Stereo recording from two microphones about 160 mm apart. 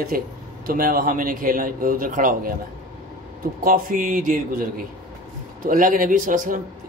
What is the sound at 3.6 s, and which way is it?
Speech, 60° right (ahead or behind).